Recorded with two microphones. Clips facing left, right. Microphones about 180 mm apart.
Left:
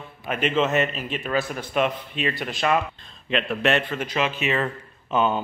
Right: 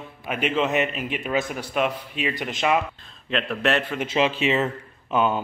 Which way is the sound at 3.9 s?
25° right (ahead or behind).